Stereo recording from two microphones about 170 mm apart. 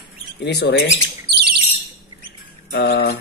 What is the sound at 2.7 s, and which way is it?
Speech, 70° left (ahead or behind).